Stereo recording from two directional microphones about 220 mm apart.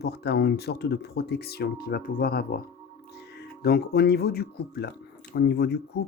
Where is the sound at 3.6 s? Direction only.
45° left (ahead or behind).